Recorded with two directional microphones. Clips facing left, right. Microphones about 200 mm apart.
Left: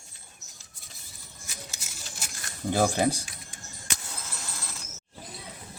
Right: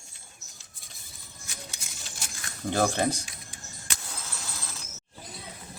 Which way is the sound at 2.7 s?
10° left (ahead or behind).